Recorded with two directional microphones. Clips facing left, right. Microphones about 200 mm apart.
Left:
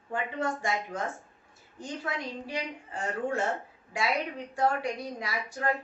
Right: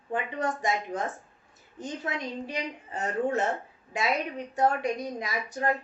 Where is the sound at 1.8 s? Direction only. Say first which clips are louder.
Right 2 dB; 20° right (ahead or behind).